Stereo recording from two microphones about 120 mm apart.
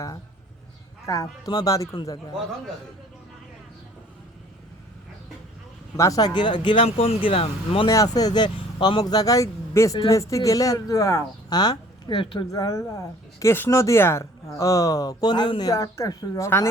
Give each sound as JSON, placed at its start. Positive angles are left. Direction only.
{"t": 1.0, "sound": "speech", "side_deg": 25}
{"t": 6.0, "sound": "speech", "side_deg": 30}
{"t": 6.8, "sound": "speech", "side_deg": 55}
{"t": 7.9, "sound": "speech", "side_deg": 30}
{"t": 12.5, "sound": "speech", "side_deg": 30}
{"t": 15.7, "sound": "speech", "side_deg": 25}